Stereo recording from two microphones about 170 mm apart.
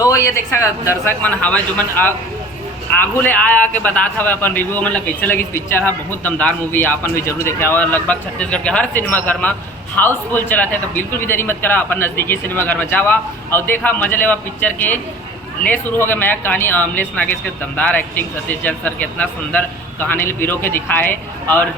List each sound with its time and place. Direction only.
0.0 s a man's voice: 20° left (ahead or behind)
3.2 s a man's voice: 10° left (ahead or behind)